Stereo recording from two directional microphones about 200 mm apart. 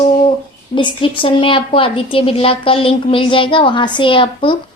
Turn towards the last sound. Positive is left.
turn(degrees=25)  # may be behind; listen again after turning